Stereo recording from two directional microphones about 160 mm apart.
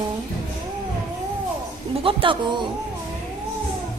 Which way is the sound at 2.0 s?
30° right (ahead or behind).